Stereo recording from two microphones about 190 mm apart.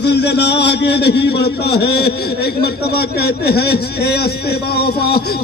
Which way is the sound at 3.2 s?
55° left (ahead or behind).